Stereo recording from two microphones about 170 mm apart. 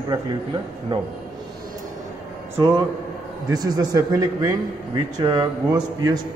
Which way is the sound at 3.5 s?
25° right (ahead or behind).